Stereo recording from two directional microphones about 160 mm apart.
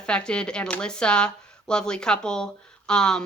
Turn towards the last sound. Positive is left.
turn(degrees=5)  # may be behind; listen again after turning